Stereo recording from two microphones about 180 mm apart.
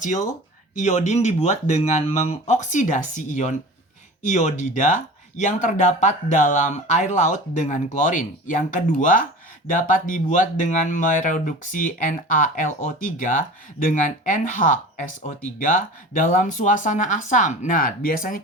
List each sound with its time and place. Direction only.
0.0 s speech: 45° left (ahead or behind)